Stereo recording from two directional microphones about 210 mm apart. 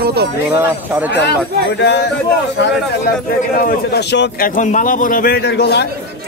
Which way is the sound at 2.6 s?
55° left (ahead or behind).